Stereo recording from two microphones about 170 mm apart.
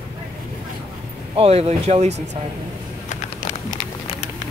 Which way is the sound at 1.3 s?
35° right (ahead or behind).